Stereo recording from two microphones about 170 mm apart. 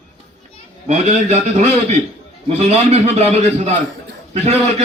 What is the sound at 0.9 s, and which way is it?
A man's voice, 40° right (ahead or behind).